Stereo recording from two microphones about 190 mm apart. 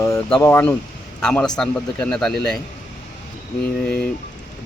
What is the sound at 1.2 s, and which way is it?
Speech, 5° left (ahead or behind).